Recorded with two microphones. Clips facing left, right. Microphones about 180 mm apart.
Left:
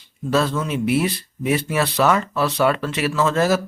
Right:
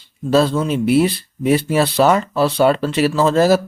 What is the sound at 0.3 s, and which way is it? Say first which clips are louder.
Speech: right 5 dB; 30° right (ahead or behind).